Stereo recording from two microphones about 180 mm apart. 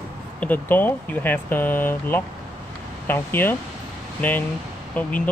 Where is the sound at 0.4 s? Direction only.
10° left (ahead or behind).